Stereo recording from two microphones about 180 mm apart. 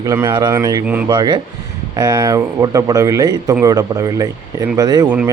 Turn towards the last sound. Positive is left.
turn(degrees=-20)  # may be behind; listen again after turning